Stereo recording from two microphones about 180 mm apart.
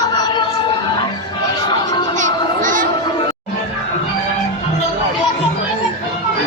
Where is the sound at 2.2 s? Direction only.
45° right (ahead or behind).